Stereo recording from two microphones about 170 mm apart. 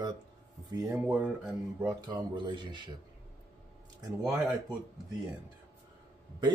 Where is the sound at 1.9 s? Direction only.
25° right (ahead or behind).